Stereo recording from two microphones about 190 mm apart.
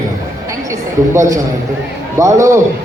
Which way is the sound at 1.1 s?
15° right (ahead or behind).